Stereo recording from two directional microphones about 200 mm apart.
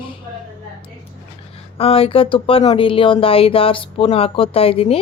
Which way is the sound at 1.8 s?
30° left (ahead or behind).